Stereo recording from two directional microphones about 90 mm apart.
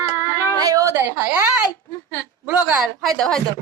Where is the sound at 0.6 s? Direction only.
40° right (ahead or behind); by 1.3 s 25° right (ahead or behind).